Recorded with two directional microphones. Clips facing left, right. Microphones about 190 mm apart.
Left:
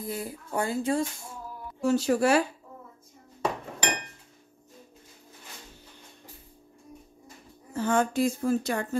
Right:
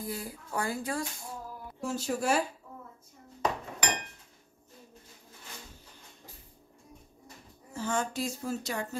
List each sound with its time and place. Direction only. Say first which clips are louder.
0.0 s speech: left 3 dB; 25° left (ahead or behind)
1.8 s speech: left 9 dB; 70° left (ahead or behind)
7.7 s speech: left 7 dB; 55° left (ahead or behind)